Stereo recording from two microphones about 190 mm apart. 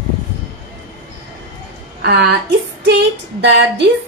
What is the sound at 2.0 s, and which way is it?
Speech, 65° right (ahead or behind).